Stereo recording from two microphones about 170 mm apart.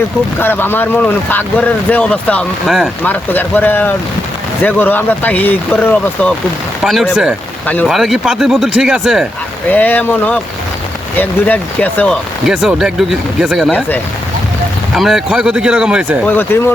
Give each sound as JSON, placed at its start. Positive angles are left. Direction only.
{"t": 0.3, "sound": "speech", "side_deg": 10}
{"t": 3.0, "sound": "speech", "side_deg": 10}
{"t": 6.8, "sound": "speech", "side_deg": 0}
{"t": 9.6, "sound": "speech", "side_deg": 10}
{"t": 12.5, "sound": "speech", "side_deg": -5}
{"t": 14.9, "sound": "speech", "side_deg": 0}
{"t": 16.2, "sound": "speech", "side_deg": 10}